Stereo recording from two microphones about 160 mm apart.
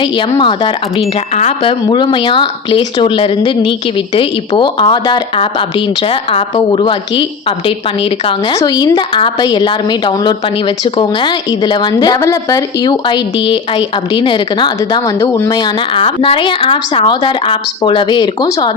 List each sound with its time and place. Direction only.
0.0 s a woman's voice: 30° left (ahead or behind)
1.4 s speech: 45° left (ahead or behind)
1.9 s a woman's voice: 30° left (ahead or behind)